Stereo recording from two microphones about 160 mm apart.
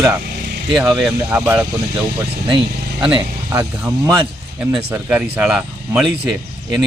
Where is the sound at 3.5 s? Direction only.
15° right (ahead or behind).